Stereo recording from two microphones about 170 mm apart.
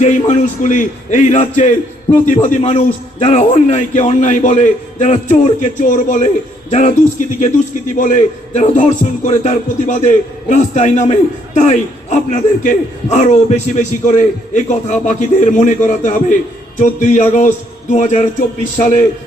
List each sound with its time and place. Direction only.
0.0 s speech: 45° left (ahead or behind)